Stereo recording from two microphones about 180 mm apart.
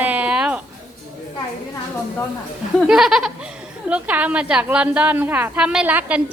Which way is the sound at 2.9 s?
Centre (ahead or behind).